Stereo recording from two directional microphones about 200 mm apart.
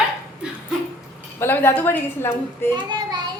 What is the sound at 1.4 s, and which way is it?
A woman's voice, 10° left (ahead or behind).